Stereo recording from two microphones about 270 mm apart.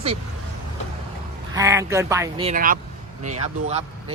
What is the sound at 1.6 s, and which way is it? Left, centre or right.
Speech, centre.